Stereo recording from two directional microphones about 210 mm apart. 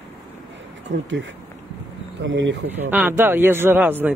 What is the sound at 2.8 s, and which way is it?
Speech, 10° right (ahead or behind).